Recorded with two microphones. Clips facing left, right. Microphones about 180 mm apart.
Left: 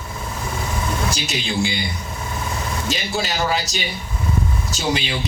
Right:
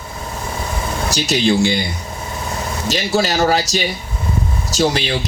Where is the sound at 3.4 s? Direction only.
70° right (ahead or behind).